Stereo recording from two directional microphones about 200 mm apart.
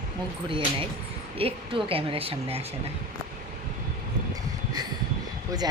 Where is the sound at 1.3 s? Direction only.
25° right (ahead or behind).